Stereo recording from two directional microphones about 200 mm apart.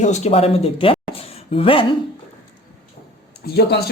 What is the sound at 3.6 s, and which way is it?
Speech, 55° left (ahead or behind).